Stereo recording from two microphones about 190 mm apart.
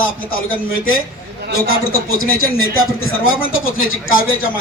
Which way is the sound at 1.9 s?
90° left.